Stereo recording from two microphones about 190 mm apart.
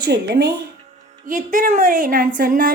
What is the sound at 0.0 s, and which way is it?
Speech, 55° right (ahead or behind).